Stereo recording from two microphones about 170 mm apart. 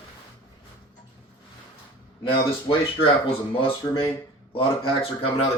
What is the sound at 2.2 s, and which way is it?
Speech, 30° left (ahead or behind).